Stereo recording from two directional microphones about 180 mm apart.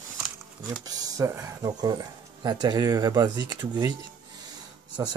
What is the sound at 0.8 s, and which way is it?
Speech, 20° right (ahead or behind).